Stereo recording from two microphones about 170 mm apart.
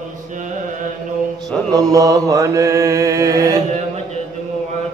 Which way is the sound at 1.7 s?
20° right (ahead or behind).